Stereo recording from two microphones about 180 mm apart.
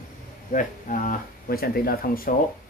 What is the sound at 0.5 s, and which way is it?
Speech, 45° left (ahead or behind).